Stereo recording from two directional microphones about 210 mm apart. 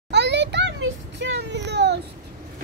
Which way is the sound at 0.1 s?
55° right (ahead or behind).